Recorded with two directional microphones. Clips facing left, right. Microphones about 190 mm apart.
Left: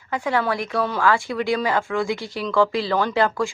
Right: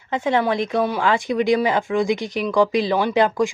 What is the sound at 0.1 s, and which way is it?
Speech, 20° right (ahead or behind).